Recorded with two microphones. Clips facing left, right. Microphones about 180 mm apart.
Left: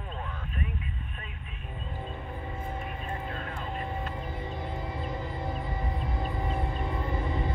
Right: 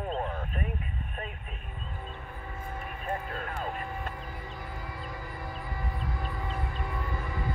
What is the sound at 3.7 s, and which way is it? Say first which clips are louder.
Music: left 2 dB; 25° left (ahead or behind).